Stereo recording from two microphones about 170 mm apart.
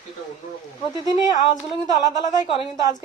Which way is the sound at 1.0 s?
20° right (ahead or behind).